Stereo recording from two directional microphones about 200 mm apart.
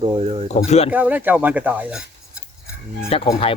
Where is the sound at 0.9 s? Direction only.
10° right (ahead or behind).